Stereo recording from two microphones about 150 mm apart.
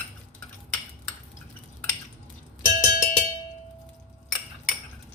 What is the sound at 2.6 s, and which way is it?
Cowbell, 20° left (ahead or behind).